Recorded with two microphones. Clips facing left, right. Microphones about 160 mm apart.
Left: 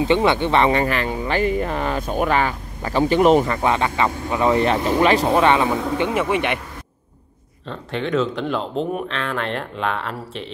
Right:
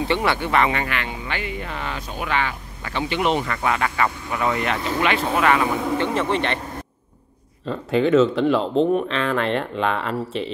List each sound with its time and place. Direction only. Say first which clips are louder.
0.0 s speech: left 5 dB; 20° left (ahead or behind); by 3.4 s 40° left (ahead or behind)
3.4 s speech: left 3 dB; 25° left (ahead or behind)
5.9 s speech: left 2 dB; 10° left (ahead or behind)
7.6 s speech: right 6 dB; 5° right (ahead or behind)